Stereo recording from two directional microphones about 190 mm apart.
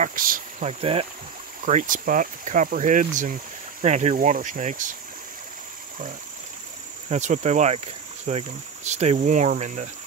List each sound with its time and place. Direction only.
0.0 s speech: 45° right (ahead or behind)
0.7 s speech: 30° right (ahead or behind)
1.6 s speech: 40° right (ahead or behind)
7.1 s speech: 40° right (ahead or behind)